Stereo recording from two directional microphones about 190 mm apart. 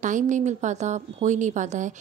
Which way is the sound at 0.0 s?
40° right (ahead or behind).